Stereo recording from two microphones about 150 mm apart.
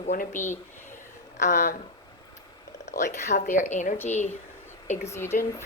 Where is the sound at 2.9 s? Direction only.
55° left (ahead or behind).